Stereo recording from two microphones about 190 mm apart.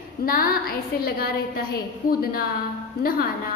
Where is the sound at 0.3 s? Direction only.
50° left (ahead or behind).